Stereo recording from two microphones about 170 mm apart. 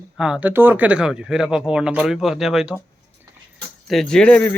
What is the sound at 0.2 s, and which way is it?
Speech, 5° right (ahead or behind).